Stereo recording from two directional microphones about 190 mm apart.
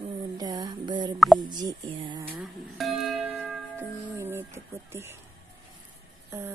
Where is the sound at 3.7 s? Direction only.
15° right (ahead or behind).